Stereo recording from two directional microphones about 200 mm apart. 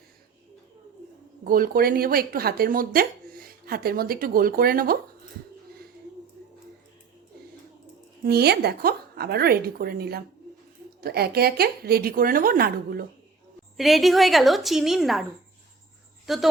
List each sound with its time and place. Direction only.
1.5 s speech: 45° right (ahead or behind)
8.2 s speech: 50° right (ahead or behind)
13.7 s a woman's voice: centre (ahead or behind)
16.2 s speech: centre (ahead or behind)